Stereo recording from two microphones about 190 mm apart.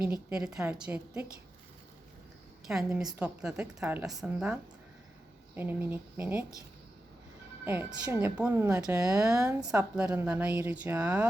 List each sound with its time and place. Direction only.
0.0 s a woman's voice: 5° right (ahead or behind)
2.6 s a woman's voice: 5° right (ahead or behind)
5.5 s a woman's voice: 10° right (ahead or behind)
7.6 s a woman's voice: 10° right (ahead or behind)
8.2 s a woman's voice: 10° right (ahead or behind)